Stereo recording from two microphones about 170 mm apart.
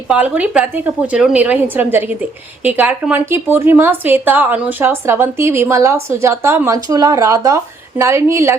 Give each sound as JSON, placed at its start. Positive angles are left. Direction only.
{"t": 0.1, "sound": "a woman's voice", "side_deg": -10}